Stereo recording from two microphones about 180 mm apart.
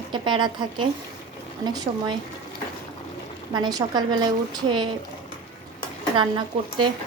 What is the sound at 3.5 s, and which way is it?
A woman's voice, 20° right (ahead or behind).